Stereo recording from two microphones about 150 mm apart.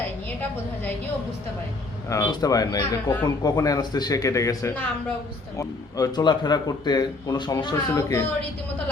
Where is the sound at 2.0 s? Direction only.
20° left (ahead or behind).